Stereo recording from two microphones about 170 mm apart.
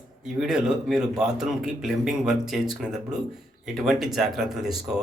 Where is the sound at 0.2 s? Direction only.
5° right (ahead or behind).